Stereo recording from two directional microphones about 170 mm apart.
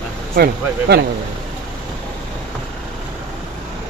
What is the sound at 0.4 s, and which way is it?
Speech, 75° right (ahead or behind).